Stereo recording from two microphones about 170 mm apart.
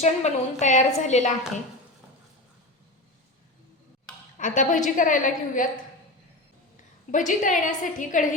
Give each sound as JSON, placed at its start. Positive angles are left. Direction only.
{"t": 0.0, "sound": "a woman's voice", "side_deg": 45}
{"t": 4.4, "sound": "a woman's voice", "side_deg": 50}
{"t": 7.1, "sound": "a woman's voice", "side_deg": 50}